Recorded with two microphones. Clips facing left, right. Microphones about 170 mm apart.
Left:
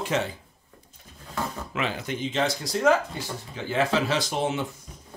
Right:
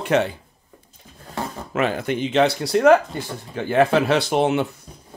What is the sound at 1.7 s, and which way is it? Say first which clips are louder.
Speech: right 11 dB; 50° right (ahead or behind).